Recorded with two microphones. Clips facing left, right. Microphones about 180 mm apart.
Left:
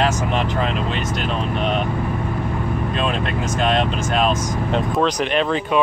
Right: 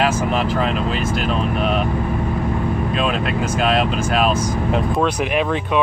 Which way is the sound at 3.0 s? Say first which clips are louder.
Right 1 dB; 5° right (ahead or behind).